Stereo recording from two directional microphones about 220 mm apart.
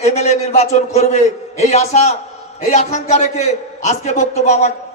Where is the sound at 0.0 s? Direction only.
30° left (ahead or behind).